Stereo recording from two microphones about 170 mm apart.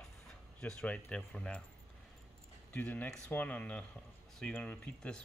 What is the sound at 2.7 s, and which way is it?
Speech, 10° left (ahead or behind).